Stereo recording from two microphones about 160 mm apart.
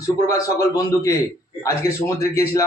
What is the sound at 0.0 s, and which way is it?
Speech, 20° left (ahead or behind).